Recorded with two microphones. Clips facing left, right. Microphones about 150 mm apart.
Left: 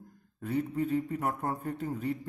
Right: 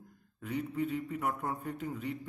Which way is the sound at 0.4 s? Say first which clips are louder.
Left 4 dB; 40° left (ahead or behind).